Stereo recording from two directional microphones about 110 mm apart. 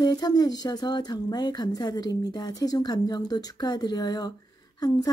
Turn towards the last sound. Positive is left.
turn(degrees=40)  # may be behind; listen again after turning